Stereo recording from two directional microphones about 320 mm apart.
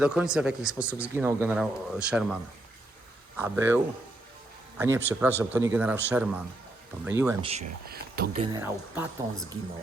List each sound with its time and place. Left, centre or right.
0.0 s speech: centre
3.3 s speech: centre
4.8 s speech: centre
7.5 s speech: right
8.5 s speech: centre